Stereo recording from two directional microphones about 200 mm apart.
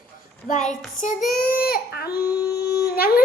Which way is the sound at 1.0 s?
40° left (ahead or behind).